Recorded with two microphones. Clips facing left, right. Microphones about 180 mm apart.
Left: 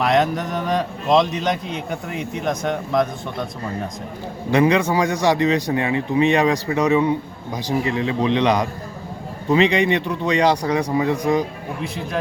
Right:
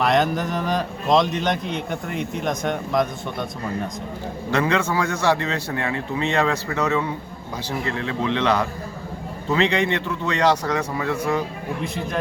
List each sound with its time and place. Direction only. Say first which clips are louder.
0.0 s a man's voice: left 1 dB; centre (ahead or behind)
4.5 s speech: left 5 dB; 15° left (ahead or behind)
11.8 s a man's voice: left 1 dB; centre (ahead or behind)